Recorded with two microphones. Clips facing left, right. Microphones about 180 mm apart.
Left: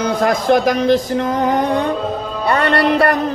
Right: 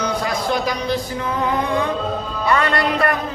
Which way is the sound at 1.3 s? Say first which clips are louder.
Left 3 dB; 70° left (ahead or behind).